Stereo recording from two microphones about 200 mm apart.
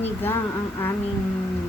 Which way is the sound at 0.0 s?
10° left (ahead or behind).